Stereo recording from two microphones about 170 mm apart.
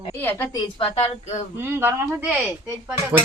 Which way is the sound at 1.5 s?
15° right (ahead or behind).